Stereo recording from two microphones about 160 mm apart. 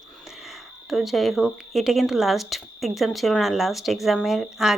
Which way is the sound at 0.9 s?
Centre (ahead or behind).